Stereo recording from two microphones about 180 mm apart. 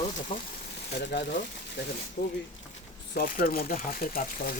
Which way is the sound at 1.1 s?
70° left (ahead or behind).